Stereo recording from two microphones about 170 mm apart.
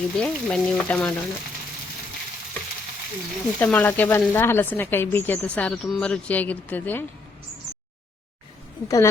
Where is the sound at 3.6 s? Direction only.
10° left (ahead or behind).